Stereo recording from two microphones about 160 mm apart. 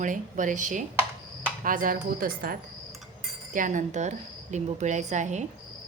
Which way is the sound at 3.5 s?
50° right (ahead or behind).